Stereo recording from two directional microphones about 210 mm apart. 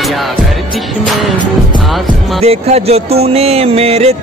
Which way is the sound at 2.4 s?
30° right (ahead or behind).